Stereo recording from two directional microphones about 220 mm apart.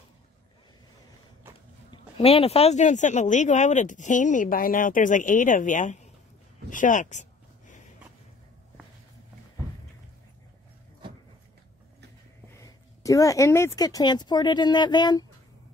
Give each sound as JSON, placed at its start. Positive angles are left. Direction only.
{"t": 1.9, "sound": "speech", "side_deg": 25}
{"t": 6.7, "sound": "a sound", "side_deg": 35}
{"t": 12.5, "sound": "speech", "side_deg": 15}